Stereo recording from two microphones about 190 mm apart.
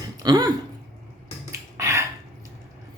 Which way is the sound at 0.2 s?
20° right (ahead or behind).